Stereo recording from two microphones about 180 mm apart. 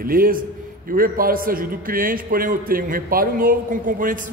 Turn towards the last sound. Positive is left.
turn(degrees=-50)  # may be behind; listen again after turning